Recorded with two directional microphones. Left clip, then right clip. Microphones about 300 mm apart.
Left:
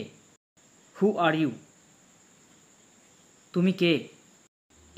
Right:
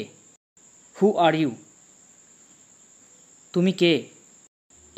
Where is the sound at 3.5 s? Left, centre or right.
Right.